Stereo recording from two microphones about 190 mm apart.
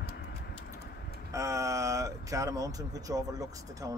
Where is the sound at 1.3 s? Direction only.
15° right (ahead or behind).